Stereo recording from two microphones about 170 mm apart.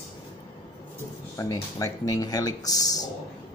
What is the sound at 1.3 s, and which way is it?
Speech, 20° left (ahead or behind).